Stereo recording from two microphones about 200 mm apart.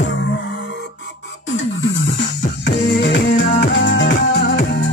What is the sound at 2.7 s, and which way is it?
Music, 60° left (ahead or behind).